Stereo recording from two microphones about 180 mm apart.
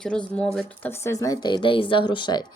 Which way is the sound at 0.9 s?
15° left (ahead or behind).